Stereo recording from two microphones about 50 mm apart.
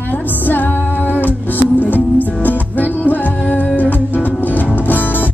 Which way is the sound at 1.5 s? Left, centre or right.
Left.